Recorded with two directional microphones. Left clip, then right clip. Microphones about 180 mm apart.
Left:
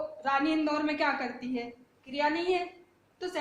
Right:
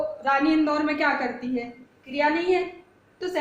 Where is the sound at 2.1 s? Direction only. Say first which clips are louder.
Right 6 dB; 15° left (ahead or behind).